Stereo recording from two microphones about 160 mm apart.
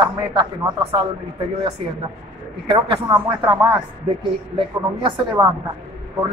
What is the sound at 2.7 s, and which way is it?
A woman's voice, 25° right (ahead or behind).